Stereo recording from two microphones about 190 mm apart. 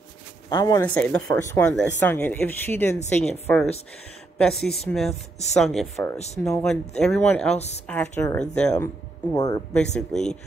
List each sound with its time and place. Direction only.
0.5 s speech: 20° left (ahead or behind)
0.8 s speech: 5° left (ahead or behind)
6.1 s speech: 35° left (ahead or behind)
7.0 s speech: 10° left (ahead or behind)
7.5 s speech: 35° left (ahead or behind)
7.8 s speech: 10° left (ahead or behind)
9.8 s speech: 5° left (ahead or behind)